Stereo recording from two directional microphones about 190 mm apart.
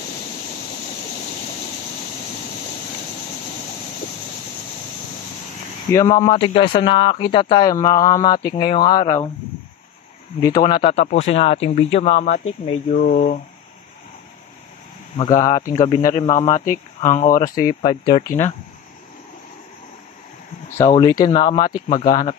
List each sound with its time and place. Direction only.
6.0 s speech: 30° left (ahead or behind)
10.4 s speech: 20° left (ahead or behind); by 13.4 s 40° left (ahead or behind)
15.1 s speech: 20° left (ahead or behind)
16.1 s speech: 35° left (ahead or behind)
17.4 s speech: 20° left (ahead or behind)
20.9 s speech: 20° left (ahead or behind)